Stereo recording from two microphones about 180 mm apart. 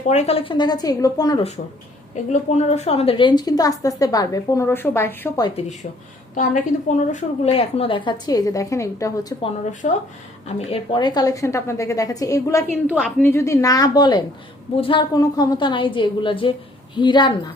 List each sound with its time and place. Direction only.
0.1 s a woman's voice: 35° left (ahead or behind)
2.3 s a woman's voice: 40° left (ahead or behind); by 5.5 s 15° left (ahead or behind)
5.5 s a woman's voice: 35° left (ahead or behind); by 9.1 s 15° left (ahead or behind)
9.8 s speech: 45° left (ahead or behind)
10.7 s a woman's voice: 30° left (ahead or behind)
12.9 s a woman's voice: centre (ahead or behind)
13.2 s a woman's voice: 15° left (ahead or behind)